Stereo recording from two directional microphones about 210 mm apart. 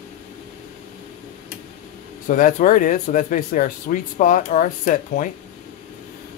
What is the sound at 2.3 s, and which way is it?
Speech, 40° left (ahead or behind).